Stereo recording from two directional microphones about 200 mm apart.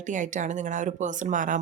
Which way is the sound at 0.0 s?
40° right (ahead or behind).